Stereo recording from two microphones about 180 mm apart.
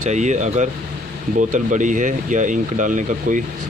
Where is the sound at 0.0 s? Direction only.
40° right (ahead or behind).